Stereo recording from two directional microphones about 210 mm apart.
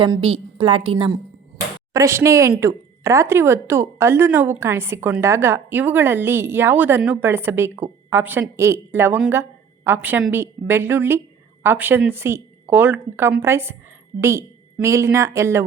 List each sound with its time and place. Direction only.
0.0 s a woman's voice: 25° right (ahead or behind)
1.5 s speech: 15° right (ahead or behind)